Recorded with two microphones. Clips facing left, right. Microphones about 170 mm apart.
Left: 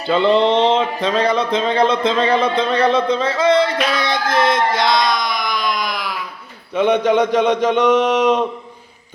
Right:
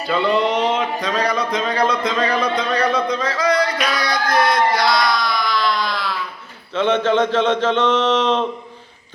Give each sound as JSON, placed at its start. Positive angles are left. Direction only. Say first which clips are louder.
{"t": 0.1, "sound": "speech", "louder": "left 4 dB", "side_deg": 30}